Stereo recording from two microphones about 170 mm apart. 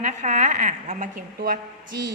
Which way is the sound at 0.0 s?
45° right (ahead or behind).